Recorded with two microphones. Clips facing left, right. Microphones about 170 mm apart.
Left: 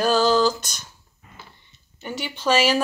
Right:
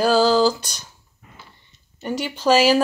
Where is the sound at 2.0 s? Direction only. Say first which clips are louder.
Right 5 dB; 5° right (ahead or behind).